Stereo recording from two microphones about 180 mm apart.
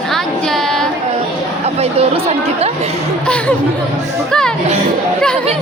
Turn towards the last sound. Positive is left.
turn(degrees=5)  # may be behind; listen again after turning